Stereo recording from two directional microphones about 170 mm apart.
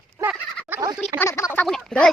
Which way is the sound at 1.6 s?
5° left (ahead or behind).